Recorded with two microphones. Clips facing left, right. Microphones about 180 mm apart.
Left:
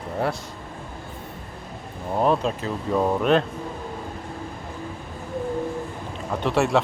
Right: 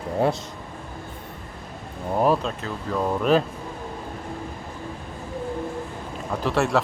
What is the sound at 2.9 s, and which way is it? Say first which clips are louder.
Speech: left 3 dB; 15° left (ahead or behind).